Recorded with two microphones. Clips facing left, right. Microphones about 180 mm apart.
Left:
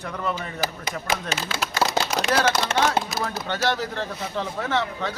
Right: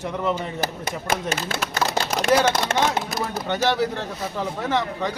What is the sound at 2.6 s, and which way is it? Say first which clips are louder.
Speech: right 2 dB; 50° right (ahead or behind).